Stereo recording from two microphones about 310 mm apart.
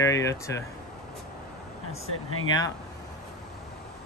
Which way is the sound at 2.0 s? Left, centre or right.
Left.